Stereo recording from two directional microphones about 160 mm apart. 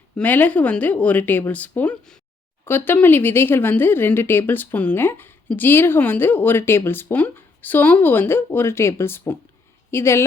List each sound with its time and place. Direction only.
0.2 s speech: 10° left (ahead or behind)